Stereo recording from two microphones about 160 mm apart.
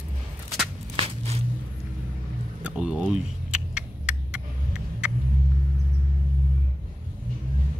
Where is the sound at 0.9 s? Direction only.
40° right (ahead or behind).